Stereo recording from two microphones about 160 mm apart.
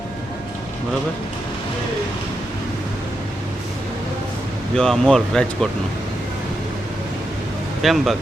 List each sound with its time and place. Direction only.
4.8 s speech: 5° left (ahead or behind)
7.8 s speech: centre (ahead or behind)